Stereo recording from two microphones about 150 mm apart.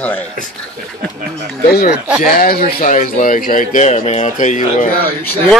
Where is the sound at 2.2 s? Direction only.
80° left; by 4.9 s 55° left (ahead or behind).